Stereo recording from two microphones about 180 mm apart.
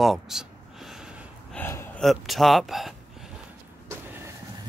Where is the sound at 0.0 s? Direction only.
Centre (ahead or behind).